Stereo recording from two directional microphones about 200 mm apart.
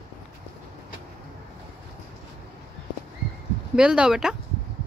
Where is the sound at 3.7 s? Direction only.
5° right (ahead or behind).